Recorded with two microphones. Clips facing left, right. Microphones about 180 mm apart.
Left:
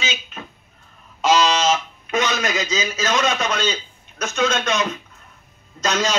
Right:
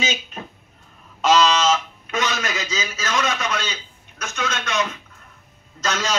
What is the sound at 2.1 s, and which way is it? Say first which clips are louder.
A man's voice: left 3 dB; 15° left (ahead or behind).